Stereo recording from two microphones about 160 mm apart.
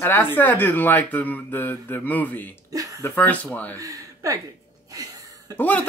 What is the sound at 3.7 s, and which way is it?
Speech, 20° right (ahead or behind).